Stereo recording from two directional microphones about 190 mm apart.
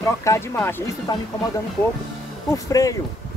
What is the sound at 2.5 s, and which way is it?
Speech, 20° left (ahead or behind).